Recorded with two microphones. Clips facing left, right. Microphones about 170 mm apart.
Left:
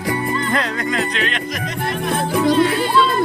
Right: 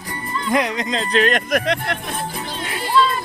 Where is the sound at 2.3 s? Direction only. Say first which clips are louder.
Left 14 dB; 70° left (ahead or behind).